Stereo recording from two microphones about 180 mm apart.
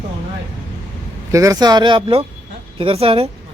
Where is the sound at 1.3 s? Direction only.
20° right (ahead or behind).